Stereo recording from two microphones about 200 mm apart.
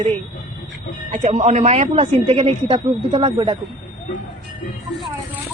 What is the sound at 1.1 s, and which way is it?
Speech, 35° right (ahead or behind).